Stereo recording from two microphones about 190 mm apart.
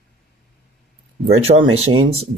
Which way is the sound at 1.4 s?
30° right (ahead or behind).